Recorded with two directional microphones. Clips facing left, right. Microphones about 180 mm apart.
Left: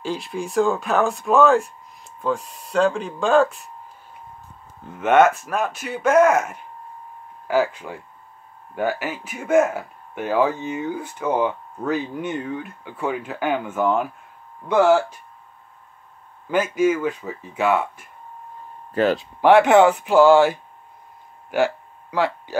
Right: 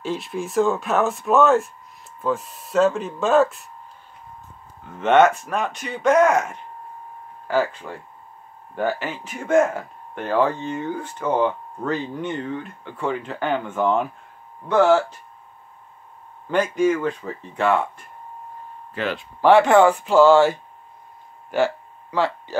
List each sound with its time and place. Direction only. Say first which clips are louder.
0.0 s speech: even; centre (ahead or behind)
4.9 s speech: even; 5° left (ahead or behind)
16.4 s speech: even; 5° left (ahead or behind)
18.9 s speech: left 7 dB; 40° left (ahead or behind)
19.4 s speech: left 1 dB; 15° left (ahead or behind)
21.5 s a sound: even; 10° left (ahead or behind)